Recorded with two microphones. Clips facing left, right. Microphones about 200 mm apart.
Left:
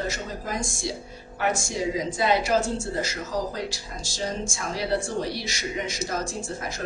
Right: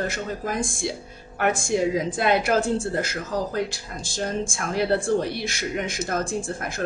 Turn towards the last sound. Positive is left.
turn(degrees=-55)  # may be behind; listen again after turning